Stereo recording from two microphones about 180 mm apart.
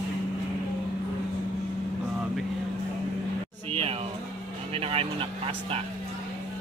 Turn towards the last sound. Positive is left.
turn(degrees=-35)  # may be behind; listen again after turning